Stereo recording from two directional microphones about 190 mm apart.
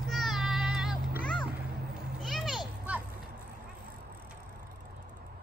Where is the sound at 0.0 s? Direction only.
Centre (ahead or behind).